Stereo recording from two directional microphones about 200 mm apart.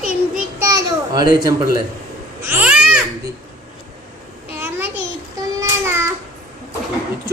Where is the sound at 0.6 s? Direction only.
15° right (ahead or behind).